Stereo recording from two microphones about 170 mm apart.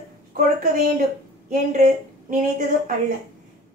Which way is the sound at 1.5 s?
50° right (ahead or behind).